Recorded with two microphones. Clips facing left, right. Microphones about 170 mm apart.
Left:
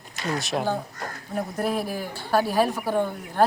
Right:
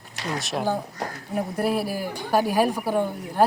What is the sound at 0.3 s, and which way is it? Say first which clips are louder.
A woman's voice: right 1 dB; centre (ahead or behind).